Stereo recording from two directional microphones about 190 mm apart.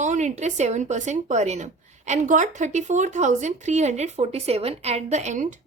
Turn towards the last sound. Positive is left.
turn(degrees=-40)  # may be behind; listen again after turning